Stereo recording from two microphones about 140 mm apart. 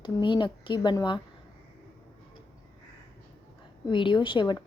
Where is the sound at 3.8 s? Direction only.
35° left (ahead or behind).